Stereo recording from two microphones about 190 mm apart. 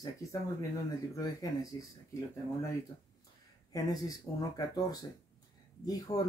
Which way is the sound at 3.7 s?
20° left (ahead or behind).